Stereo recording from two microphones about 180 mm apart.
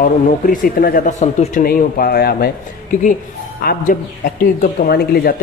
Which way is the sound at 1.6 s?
55° left (ahead or behind).